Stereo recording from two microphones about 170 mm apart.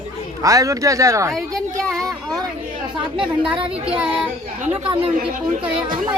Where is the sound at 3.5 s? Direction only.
30° right (ahead or behind).